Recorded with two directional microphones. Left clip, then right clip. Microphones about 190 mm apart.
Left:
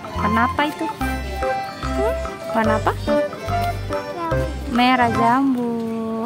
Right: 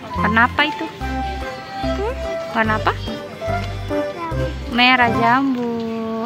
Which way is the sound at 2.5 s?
15° left (ahead or behind).